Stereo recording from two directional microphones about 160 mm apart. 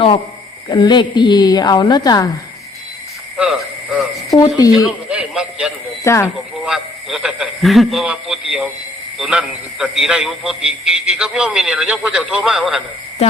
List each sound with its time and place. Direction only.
0.7 s a woman's voice: 25° left (ahead or behind)
3.3 s a sound: 5° right (ahead or behind)
4.3 s speech: 20° left (ahead or behind)
4.7 s music: 5° right (ahead or behind)
6.1 s speech: 15° left (ahead or behind)
6.7 s a man's voice: 5° right (ahead or behind)